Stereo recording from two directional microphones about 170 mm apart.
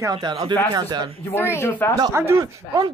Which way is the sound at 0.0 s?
25° right (ahead or behind).